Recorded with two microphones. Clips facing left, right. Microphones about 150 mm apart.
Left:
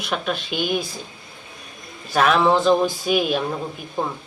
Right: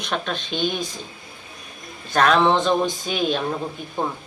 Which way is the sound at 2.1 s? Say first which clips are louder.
Even; 5° left (ahead or behind).